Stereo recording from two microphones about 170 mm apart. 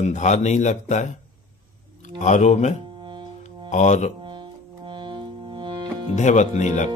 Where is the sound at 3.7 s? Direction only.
45° left (ahead or behind).